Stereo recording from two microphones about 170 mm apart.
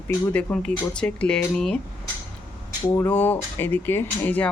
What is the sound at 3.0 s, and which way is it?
Speech, 10° left (ahead or behind).